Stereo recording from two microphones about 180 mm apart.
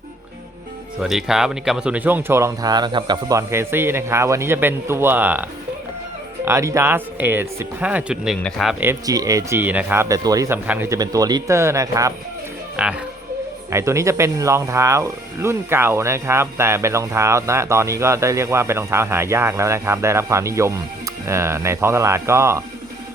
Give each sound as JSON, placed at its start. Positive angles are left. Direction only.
{"t": 1.0, "sound": "speech", "side_deg": 0}
{"t": 8.8, "sound": "speech", "side_deg": -15}
{"t": 12.7, "sound": "speech", "side_deg": -5}
{"t": 13.7, "sound": "speech", "side_deg": -15}